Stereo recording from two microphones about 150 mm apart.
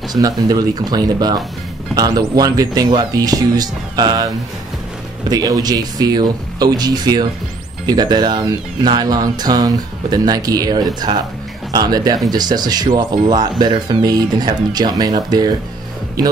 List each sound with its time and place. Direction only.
0.1 s speech: 25° right (ahead or behind)
5.3 s speech: 25° right (ahead or behind)